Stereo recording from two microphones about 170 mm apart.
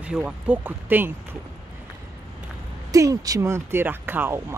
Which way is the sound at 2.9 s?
20° right (ahead or behind).